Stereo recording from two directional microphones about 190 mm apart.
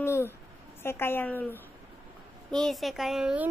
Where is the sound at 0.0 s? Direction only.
15° left (ahead or behind).